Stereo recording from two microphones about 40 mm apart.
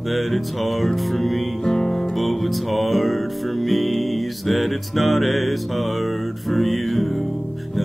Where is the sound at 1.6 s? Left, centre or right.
Centre.